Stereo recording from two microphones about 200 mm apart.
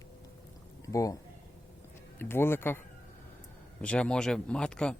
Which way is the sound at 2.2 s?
10° left (ahead or behind).